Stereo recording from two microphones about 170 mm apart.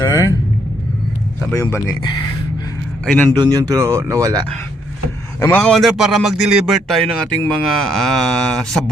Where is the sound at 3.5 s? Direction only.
15° right (ahead or behind).